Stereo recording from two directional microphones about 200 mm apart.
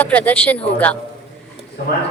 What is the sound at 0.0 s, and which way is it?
Speech, 10° left (ahead or behind).